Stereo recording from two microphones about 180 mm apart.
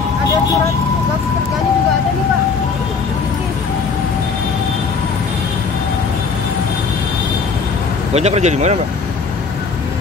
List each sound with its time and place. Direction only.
8.1 s speech: 35° right (ahead or behind)